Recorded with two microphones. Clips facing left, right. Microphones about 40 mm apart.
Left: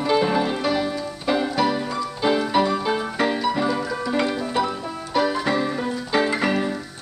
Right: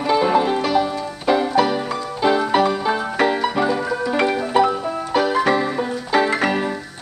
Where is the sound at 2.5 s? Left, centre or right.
Right.